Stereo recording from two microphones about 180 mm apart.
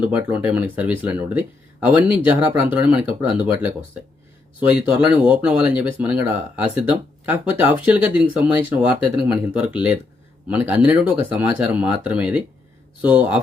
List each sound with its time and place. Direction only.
0.0 s speech: 10° right (ahead or behind)